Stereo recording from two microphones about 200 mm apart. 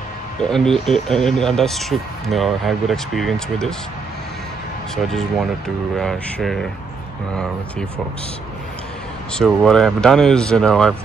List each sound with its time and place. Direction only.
0.4 s speech: centre (ahead or behind)
4.9 s speech: centre (ahead or behind)
9.3 s speech: centre (ahead or behind)